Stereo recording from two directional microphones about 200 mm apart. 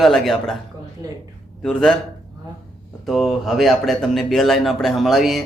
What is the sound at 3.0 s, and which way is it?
Speech, centre (ahead or behind).